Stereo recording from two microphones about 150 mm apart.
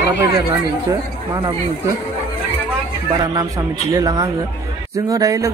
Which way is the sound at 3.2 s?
20° right (ahead or behind).